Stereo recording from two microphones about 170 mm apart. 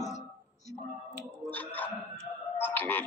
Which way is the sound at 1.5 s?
10° left (ahead or behind).